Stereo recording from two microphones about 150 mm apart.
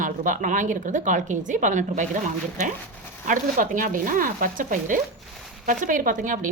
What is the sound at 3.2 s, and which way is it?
A woman's voice, 60° right (ahead or behind).